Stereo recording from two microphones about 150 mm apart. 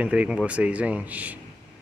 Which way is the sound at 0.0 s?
10° right (ahead or behind).